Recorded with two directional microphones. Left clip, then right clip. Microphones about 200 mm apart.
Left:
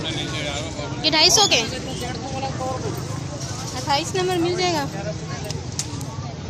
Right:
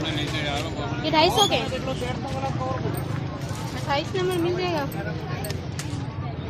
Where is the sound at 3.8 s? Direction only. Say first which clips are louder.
Left 3 dB; 55° left (ahead or behind).